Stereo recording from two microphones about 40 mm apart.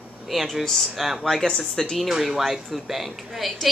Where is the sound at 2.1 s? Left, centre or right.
Centre.